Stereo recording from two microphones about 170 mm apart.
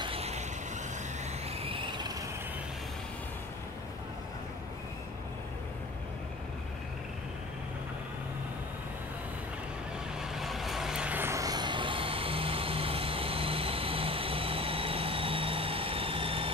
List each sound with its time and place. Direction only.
0.0 s vehicle: 35° right (ahead or behind)
1.6 s vehicle: 30° right (ahead or behind)
10.3 s vehicle: centre (ahead or behind); by 16.5 s 35° right (ahead or behind)